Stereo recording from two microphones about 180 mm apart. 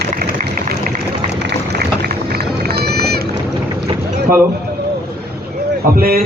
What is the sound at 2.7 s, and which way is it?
Run, 60° right (ahead or behind).